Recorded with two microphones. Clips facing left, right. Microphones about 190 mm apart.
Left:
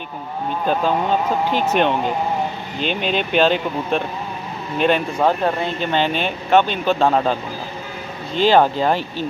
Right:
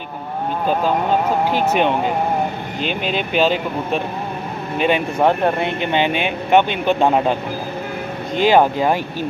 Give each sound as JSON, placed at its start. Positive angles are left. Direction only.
{"t": 1.5, "sound": "speech", "side_deg": -10}
{"t": 3.0, "sound": "speech", "side_deg": -5}
{"t": 5.2, "sound": "speech", "side_deg": -20}
{"t": 8.5, "sound": "speech", "side_deg": -10}